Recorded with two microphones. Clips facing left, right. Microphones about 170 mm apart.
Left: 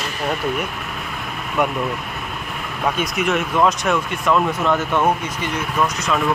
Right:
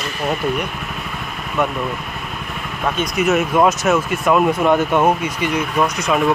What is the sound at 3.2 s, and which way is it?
Speech, 10° right (ahead or behind).